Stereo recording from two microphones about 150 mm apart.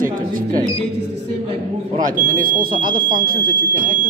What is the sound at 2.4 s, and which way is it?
Speech, 70° right (ahead or behind).